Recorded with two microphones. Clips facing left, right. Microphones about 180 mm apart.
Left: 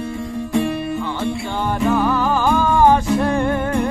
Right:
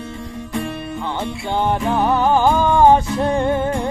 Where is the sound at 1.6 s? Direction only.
20° right (ahead or behind).